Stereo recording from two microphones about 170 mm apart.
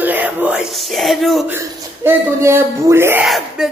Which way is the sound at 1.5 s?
15° right (ahead or behind).